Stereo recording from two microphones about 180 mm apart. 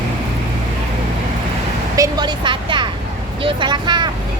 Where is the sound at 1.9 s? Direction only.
20° right (ahead or behind).